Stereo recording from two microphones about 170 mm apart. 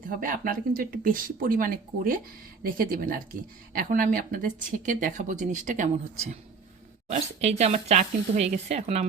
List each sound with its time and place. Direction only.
0.0 s speech: 55° right (ahead or behind); by 9.0 s 40° right (ahead or behind)